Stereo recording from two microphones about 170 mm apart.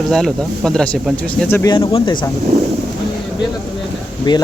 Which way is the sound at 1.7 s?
30° left (ahead or behind).